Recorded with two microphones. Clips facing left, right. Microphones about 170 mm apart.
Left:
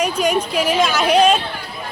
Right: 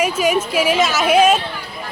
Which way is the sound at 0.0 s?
5° right (ahead or behind).